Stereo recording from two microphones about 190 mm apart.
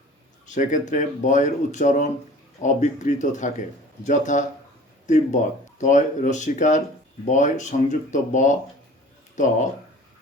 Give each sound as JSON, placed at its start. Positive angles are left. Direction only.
{"t": 0.4, "sound": "speech", "side_deg": 40}